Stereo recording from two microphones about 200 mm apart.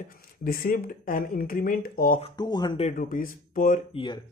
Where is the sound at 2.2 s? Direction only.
20° left (ahead or behind).